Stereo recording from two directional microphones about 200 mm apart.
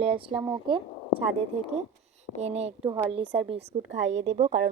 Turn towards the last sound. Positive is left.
turn(degrees=-35)  # may be behind; listen again after turning